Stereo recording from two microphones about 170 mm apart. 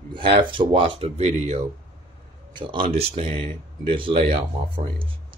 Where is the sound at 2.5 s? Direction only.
30° right (ahead or behind).